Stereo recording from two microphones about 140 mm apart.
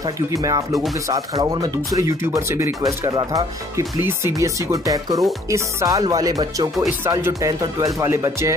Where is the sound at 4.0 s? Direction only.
15° right (ahead or behind).